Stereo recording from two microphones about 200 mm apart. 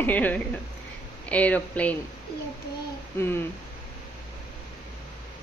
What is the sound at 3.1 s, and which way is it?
Speech, 10° left (ahead or behind).